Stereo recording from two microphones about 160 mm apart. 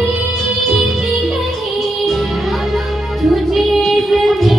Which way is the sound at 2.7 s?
Centre (ahead or behind).